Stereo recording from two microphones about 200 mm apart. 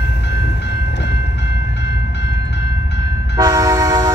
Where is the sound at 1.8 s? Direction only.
60° left (ahead or behind).